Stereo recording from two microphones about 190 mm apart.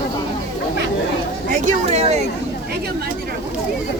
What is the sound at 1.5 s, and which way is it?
Speech, 40° right (ahead or behind).